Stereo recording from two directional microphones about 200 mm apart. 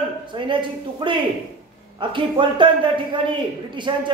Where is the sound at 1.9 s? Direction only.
25° right (ahead or behind).